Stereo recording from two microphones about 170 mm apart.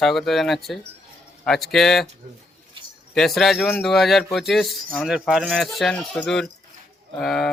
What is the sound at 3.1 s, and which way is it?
Speech, centre (ahead or behind).